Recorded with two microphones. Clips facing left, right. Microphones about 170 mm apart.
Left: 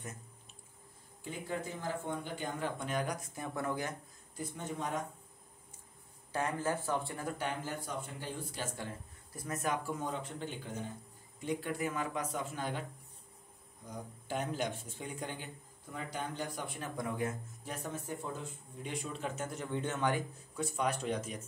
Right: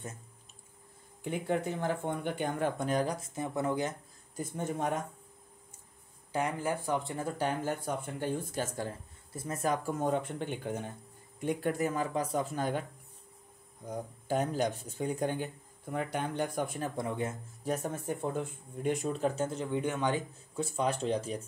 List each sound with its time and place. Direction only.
1.3 s speech: 65° right (ahead or behind); by 3.9 s 20° right (ahead or behind)
4.4 s speech: 50° right (ahead or behind)
6.3 s speech: 15° right (ahead or behind)
7.3 s speech: 45° right (ahead or behind)
9.3 s speech: 30° right (ahead or behind)
9.8 s speech: 50° right (ahead or behind)
11.9 s speech: 35° right (ahead or behind)
14.2 s speech: 40° right (ahead or behind)
16.9 s speech: 25° right (ahead or behind)
17.6 s speech: 50° right (ahead or behind); by 21.4 s 30° right (ahead or behind)